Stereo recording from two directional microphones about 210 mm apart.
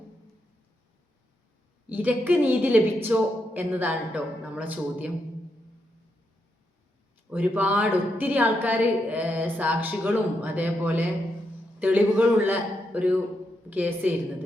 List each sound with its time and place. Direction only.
1.9 s a woman's voice: 10° right (ahead or behind)
7.3 s a woman's voice: 10° right (ahead or behind)